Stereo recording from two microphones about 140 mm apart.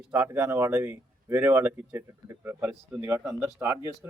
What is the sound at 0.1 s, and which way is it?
Speech, 15° right (ahead or behind).